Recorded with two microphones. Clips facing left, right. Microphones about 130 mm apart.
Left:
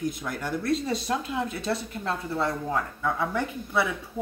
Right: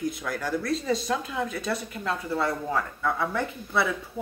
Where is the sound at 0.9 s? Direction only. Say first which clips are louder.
Right 1 dB; 30° left (ahead or behind).